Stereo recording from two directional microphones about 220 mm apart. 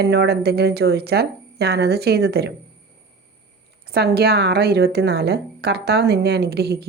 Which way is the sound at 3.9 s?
45° right (ahead or behind).